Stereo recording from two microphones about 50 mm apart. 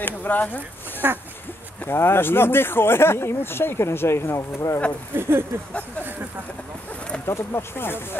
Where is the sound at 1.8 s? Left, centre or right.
Left.